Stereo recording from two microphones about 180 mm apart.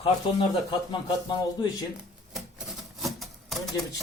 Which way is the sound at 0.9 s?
25° left (ahead or behind).